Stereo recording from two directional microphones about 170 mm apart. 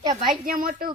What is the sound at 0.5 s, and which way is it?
Speech, 55° right (ahead or behind).